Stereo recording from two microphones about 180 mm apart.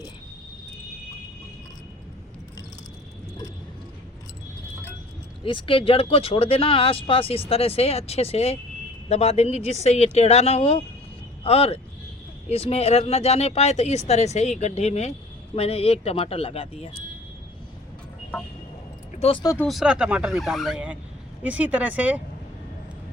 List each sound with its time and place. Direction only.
5.5 s speech: 30° left (ahead or behind)
19.1 s speech: 30° left (ahead or behind)
19.6 s speech: 5° right (ahead or behind)